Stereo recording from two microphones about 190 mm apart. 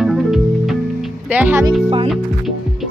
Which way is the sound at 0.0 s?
Centre (ahead or behind).